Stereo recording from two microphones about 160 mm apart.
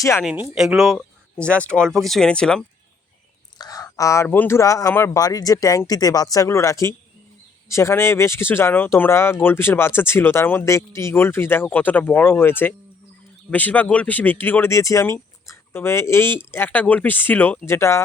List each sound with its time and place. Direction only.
0.0 s speech: 15° left (ahead or behind)
0.5 s speech: 5° right (ahead or behind)
3.6 s speech: 25° left (ahead or behind)